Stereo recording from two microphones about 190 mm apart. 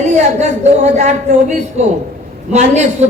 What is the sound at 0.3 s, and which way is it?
Speech, 40° right (ahead or behind).